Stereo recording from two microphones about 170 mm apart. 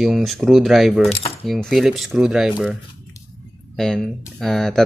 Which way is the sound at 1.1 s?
35° left (ahead or behind).